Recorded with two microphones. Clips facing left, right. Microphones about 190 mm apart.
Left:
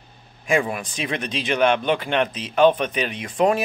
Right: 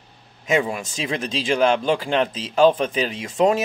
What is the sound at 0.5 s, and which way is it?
Speech, 25° right (ahead or behind).